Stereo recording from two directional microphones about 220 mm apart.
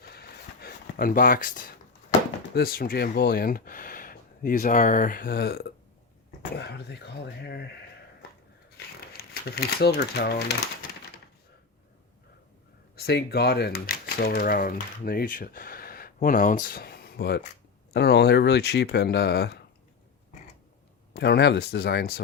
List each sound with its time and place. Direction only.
0.0 s a sound: 45° left (ahead or behind)
2.6 s speech: 40° left (ahead or behind)
9.1 s speech: 45° left (ahead or behind)
13.0 s speech: 45° left (ahead or behind)
21.1 s speech: 45° left (ahead or behind)